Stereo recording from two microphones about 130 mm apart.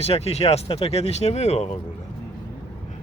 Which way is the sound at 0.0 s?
55° left (ahead or behind).